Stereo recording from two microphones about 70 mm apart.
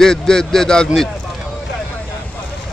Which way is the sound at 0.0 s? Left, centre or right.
Centre.